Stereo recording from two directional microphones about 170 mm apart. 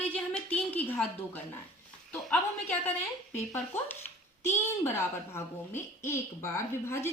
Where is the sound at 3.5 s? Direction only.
15° left (ahead or behind).